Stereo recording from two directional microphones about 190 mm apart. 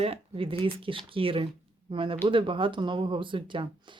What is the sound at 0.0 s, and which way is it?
Speech, 30° right (ahead or behind).